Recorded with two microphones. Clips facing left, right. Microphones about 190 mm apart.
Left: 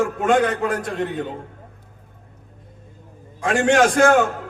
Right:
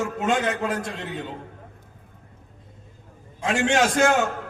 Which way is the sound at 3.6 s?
50° left (ahead or behind).